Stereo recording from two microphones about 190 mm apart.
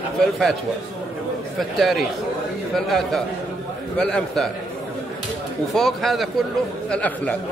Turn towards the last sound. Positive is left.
turn(degrees=5)  # may be behind; listen again after turning